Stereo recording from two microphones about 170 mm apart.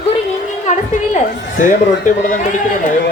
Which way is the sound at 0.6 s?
45° left (ahead or behind).